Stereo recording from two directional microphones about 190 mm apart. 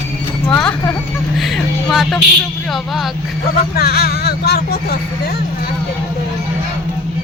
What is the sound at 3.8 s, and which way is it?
Speech, 55° left (ahead or behind).